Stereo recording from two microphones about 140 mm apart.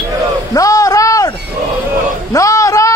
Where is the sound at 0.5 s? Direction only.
25° left (ahead or behind).